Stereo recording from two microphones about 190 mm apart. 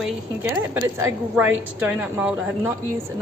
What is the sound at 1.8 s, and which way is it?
Speech, 10° right (ahead or behind).